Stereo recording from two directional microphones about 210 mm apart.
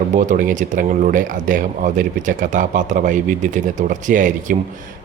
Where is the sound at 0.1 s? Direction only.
35° right (ahead or behind).